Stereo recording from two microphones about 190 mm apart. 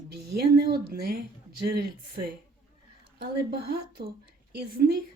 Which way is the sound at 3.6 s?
55° right (ahead or behind).